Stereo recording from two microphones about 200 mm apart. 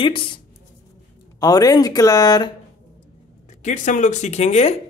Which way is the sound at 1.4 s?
20° left (ahead or behind).